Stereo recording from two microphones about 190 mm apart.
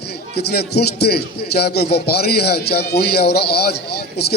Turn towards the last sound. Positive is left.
turn(degrees=55)  # may be behind; listen again after turning